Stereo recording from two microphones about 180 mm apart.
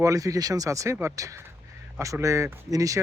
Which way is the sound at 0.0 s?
20° right (ahead or behind).